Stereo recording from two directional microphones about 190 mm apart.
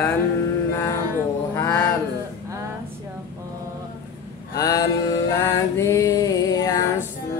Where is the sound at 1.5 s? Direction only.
15° left (ahead or behind).